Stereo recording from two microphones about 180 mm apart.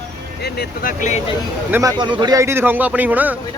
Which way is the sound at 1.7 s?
10° right (ahead or behind).